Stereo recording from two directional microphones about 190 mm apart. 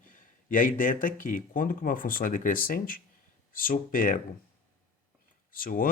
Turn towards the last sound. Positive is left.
turn(degrees=50)  # may be behind; listen again after turning